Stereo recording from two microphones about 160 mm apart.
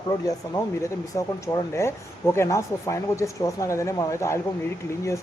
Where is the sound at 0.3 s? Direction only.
20° left (ahead or behind).